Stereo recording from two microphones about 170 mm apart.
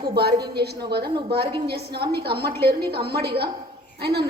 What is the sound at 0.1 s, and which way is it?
A woman's voice, 70° right (ahead or behind).